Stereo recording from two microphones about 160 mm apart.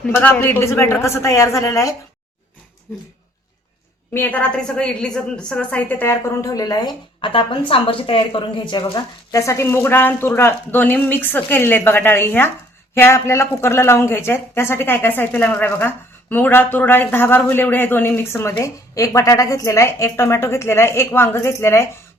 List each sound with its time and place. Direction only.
0.0 s speech: 10° left (ahead or behind)
4.1 s speech: 10° left (ahead or behind)